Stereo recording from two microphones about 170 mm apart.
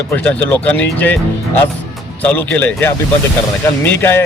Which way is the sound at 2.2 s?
10° left (ahead or behind).